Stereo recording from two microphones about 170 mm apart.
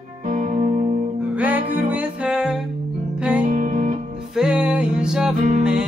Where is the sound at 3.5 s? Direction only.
50° right (ahead or behind).